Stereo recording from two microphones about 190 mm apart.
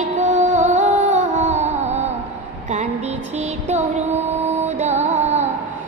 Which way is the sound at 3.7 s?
40° right (ahead or behind).